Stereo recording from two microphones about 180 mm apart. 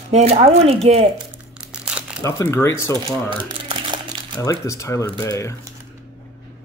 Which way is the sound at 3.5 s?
25° right (ahead or behind).